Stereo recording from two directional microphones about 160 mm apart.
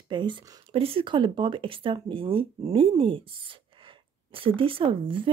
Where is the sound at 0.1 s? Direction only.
30° right (ahead or behind).